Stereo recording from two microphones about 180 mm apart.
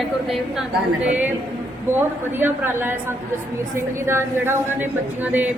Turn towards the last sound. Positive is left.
turn(degrees=-15)  # may be behind; listen again after turning